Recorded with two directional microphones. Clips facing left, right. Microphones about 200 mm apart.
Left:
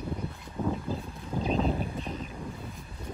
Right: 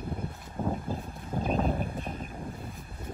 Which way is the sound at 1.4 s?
50° right (ahead or behind).